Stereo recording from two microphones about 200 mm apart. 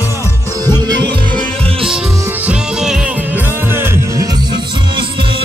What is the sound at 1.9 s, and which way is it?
Music, 5° right (ahead or behind).